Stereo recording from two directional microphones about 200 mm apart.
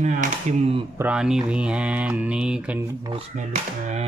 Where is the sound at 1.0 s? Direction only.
5° right (ahead or behind).